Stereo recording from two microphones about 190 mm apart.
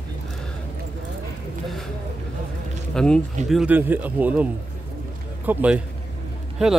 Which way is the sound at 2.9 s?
5° left (ahead or behind).